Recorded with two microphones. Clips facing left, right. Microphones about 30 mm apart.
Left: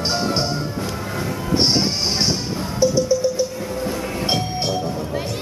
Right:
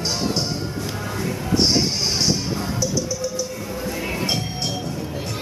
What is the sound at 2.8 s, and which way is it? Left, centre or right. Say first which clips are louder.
Music: left 12 dB; left.